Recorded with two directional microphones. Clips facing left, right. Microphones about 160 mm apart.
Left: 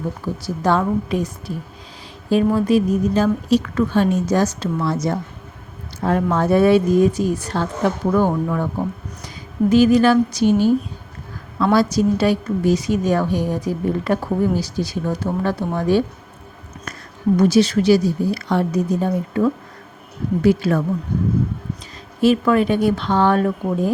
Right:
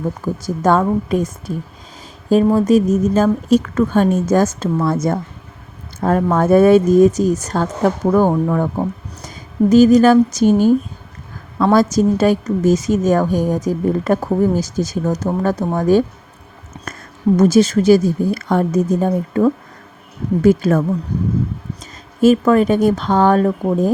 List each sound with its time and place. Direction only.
0.4 s speech: 45° right (ahead or behind)
16.7 s a sound: 30° right (ahead or behind)
17.3 s speech: 45° right (ahead or behind)
22.2 s speech: 45° right (ahead or behind)